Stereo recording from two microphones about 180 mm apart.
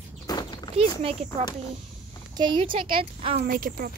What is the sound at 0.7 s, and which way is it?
Speech, 30° right (ahead or behind).